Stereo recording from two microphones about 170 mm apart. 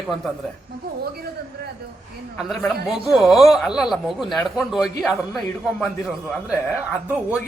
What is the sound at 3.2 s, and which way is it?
A man's voice, centre (ahead or behind).